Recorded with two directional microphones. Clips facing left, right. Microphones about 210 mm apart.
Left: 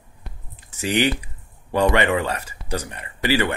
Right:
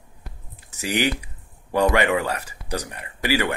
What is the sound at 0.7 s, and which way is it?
Speech, 10° right (ahead or behind).